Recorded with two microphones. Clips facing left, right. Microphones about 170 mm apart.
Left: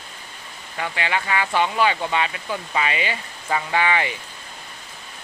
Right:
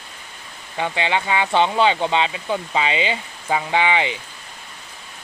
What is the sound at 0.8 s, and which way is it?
Speech, 25° right (ahead or behind).